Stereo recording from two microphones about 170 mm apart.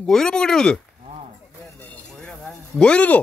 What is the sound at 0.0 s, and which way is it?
Speech, 5° left (ahead or behind).